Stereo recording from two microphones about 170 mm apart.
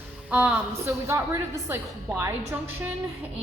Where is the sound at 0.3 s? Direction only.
10° right (ahead or behind).